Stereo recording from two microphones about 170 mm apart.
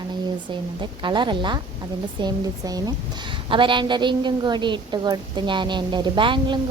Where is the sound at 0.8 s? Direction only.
30° right (ahead or behind).